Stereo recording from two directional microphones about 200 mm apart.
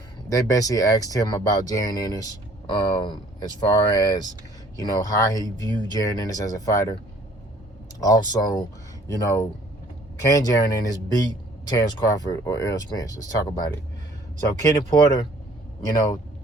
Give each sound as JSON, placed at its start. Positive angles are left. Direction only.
{"t": 0.3, "sound": "speech", "side_deg": 15}
{"t": 15.8, "sound": "speech", "side_deg": 15}